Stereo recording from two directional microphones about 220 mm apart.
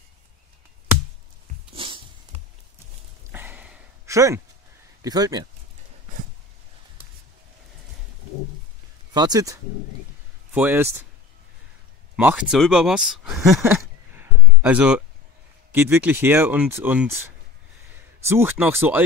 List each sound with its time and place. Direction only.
1.8 s dog: 25° right (ahead or behind)
3.3 s a sound: 10° right (ahead or behind)
5.0 s speech: 15° right (ahead or behind)
9.1 s speech: 15° right (ahead or behind)
12.2 s speech: 5° right (ahead or behind)
13.7 s a sound: 5° right (ahead or behind)
15.7 s speech: 10° right (ahead or behind)